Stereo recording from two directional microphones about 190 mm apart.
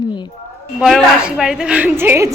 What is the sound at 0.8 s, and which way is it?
A woman's voice, centre (ahead or behind).